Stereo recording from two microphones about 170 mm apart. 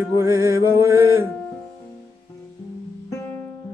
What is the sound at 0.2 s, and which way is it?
Music, 20° right (ahead or behind).